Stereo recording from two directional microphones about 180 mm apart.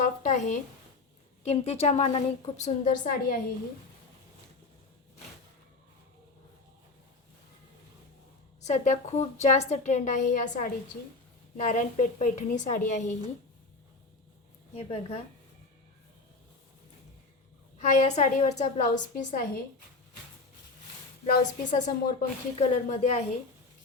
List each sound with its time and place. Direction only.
0.0 s a sound: 45° left (ahead or behind)
1.5 s a woman's voice: 35° left (ahead or behind)
8.6 s a woman's voice: 40° left (ahead or behind)
14.8 s a woman's voice: 35° left (ahead or behind)
17.7 s a woman's voice: 40° left (ahead or behind)
21.2 s a woman's voice: 45° left (ahead or behind)